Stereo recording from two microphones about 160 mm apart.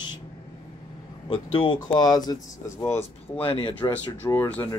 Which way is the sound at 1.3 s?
30° left (ahead or behind).